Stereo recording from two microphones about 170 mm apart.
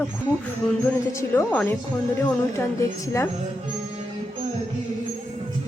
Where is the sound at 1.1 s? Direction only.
15° left (ahead or behind).